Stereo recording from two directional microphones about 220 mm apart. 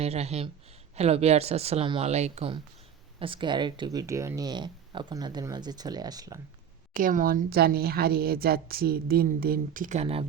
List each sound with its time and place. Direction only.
0.0 s speech: 30° right (ahead or behind)
6.9 s speech: 40° right (ahead or behind)